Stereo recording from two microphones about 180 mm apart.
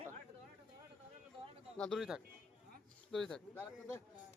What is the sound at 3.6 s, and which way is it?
Speech, 15° left (ahead or behind).